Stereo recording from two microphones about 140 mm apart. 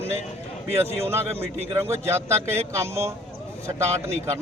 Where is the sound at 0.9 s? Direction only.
15° right (ahead or behind).